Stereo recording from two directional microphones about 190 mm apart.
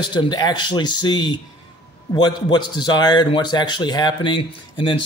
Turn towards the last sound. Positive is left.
turn(degrees=25)  # may be behind; listen again after turning